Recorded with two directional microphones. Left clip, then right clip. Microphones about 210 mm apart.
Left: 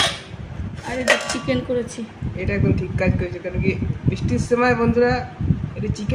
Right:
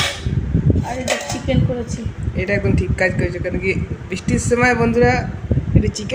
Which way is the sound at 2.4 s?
20° right (ahead or behind).